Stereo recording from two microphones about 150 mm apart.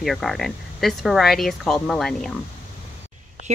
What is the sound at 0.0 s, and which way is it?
Speech, centre (ahead or behind).